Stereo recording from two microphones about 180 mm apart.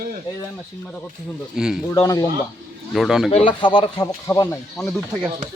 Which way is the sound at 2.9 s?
Centre (ahead or behind).